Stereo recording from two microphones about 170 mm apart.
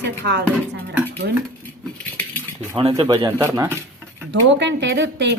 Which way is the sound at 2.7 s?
30° right (ahead or behind).